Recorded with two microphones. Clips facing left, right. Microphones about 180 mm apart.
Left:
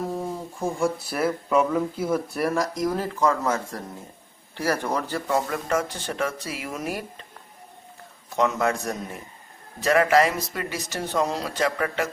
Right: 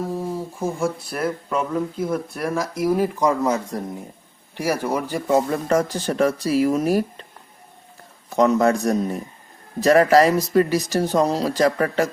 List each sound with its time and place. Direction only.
0.0 s speech: centre (ahead or behind)
5.5 s speech: 35° right (ahead or behind)
8.4 s speech: 35° right (ahead or behind)